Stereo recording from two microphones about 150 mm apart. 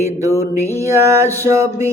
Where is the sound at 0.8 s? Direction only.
20° right (ahead or behind).